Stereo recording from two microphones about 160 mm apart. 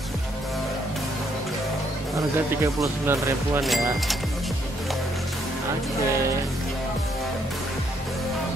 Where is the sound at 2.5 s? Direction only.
15° right (ahead or behind).